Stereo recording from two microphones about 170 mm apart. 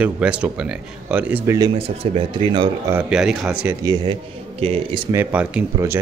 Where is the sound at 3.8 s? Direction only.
25° right (ahead or behind).